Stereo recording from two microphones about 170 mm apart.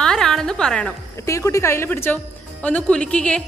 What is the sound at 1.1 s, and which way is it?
A woman's voice, 15° left (ahead or behind).